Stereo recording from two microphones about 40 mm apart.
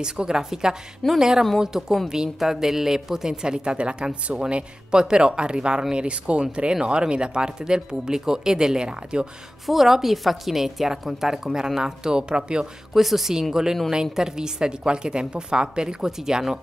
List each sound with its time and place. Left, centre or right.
0.0 s a woman's voice: centre
9.7 s a woman's voice: centre
12.9 s a woman's voice: centre